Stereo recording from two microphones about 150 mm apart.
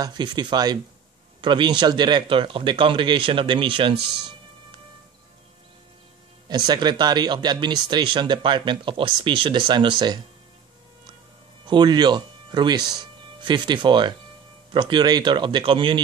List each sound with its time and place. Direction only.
0.0 s speech: 30° right (ahead or behind)
6.5 s speech: 30° right (ahead or behind)
11.6 s speech: 30° right (ahead or behind)